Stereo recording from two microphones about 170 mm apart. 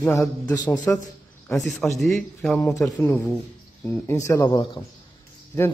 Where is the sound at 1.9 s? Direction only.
Centre (ahead or behind).